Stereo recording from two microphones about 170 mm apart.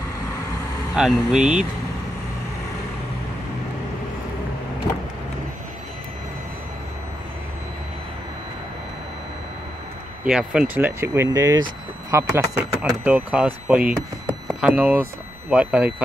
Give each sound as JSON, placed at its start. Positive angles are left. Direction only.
{"t": 0.9, "sound": "speech", "side_deg": 0}
{"t": 10.2, "sound": "speech", "side_deg": -5}